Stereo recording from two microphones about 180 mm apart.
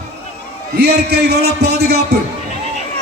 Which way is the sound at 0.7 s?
65° right (ahead or behind).